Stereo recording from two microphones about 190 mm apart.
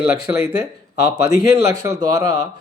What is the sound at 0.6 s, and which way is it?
Speech, 15° right (ahead or behind).